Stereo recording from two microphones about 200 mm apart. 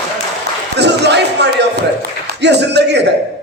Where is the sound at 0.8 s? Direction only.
60° right (ahead or behind).